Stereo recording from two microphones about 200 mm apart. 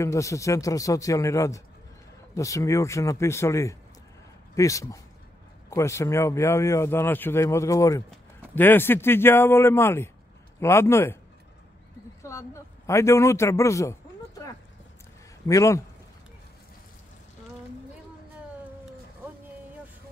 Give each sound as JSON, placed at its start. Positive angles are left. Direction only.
{"t": 0.0, "sound": "speech", "side_deg": 15}
{"t": 12.2, "sound": "a man's voice", "side_deg": 15}